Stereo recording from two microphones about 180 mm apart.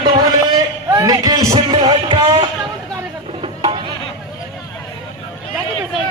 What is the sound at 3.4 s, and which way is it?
Music, 30° right (ahead or behind).